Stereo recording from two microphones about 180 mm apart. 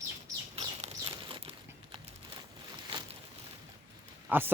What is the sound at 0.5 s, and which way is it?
Bird, 35° right (ahead or behind).